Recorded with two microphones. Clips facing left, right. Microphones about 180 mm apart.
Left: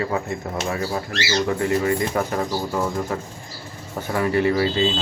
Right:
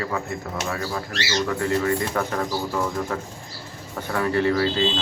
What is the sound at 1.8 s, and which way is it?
Speech, 10° left (ahead or behind).